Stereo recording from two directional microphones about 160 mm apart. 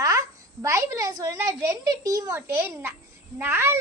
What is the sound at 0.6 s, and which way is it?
A child's voice, 20° right (ahead or behind).